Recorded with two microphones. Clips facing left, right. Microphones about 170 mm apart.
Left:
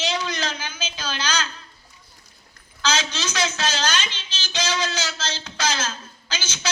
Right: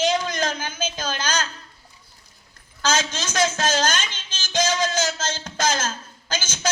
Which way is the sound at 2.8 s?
50° right (ahead or behind).